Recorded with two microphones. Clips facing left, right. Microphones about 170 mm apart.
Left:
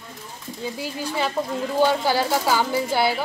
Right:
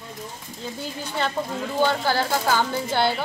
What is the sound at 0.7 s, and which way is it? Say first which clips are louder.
Speech: left 1 dB; 5° left (ahead or behind).